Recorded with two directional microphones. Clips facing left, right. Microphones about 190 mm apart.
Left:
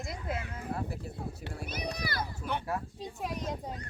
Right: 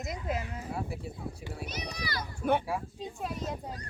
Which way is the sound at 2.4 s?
55° right (ahead or behind).